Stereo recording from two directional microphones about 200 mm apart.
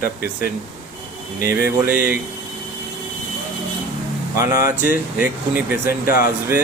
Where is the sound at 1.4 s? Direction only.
45° left (ahead or behind).